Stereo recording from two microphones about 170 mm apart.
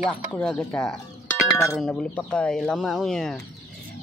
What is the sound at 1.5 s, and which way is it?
Speech, 15° left (ahead or behind).